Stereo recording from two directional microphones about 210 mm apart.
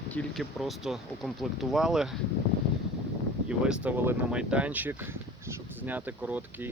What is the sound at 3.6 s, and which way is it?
Speech, 5° right (ahead or behind).